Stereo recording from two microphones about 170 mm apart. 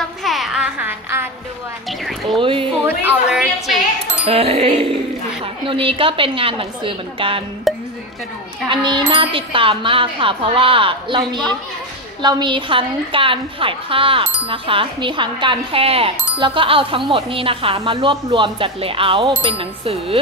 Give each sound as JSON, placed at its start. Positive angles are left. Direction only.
{"t": 0.0, "sound": "a sound", "side_deg": 0}
{"t": 1.9, "sound": "speech", "side_deg": 0}
{"t": 2.3, "sound": "a woman's voice", "side_deg": -30}
{"t": 3.1, "sound": "a woman's voice", "side_deg": -5}
{"t": 4.3, "sound": "a woman's voice", "side_deg": -35}
{"t": 7.7, "sound": "a sound", "side_deg": 0}
{"t": 8.6, "sound": "a child's voice", "side_deg": -25}